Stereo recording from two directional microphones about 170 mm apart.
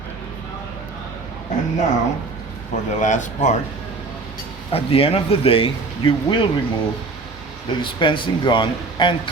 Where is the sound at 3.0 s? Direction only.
45° left (ahead or behind).